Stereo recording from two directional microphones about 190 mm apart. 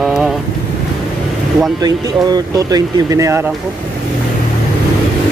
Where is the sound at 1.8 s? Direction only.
20° right (ahead or behind).